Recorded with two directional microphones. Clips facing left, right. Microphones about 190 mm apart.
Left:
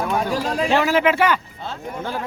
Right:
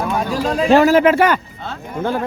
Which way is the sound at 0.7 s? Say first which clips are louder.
Right 8 dB; 40° right (ahead or behind).